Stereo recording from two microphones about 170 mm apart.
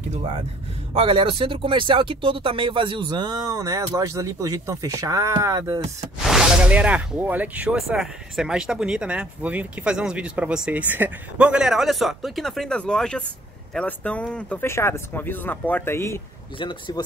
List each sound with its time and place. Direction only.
0.9 s speech: 35° right (ahead or behind)
6.2 s speech: 5° right (ahead or behind); by 16.2 s 15° left (ahead or behind)
16.5 s speech: 30° left (ahead or behind)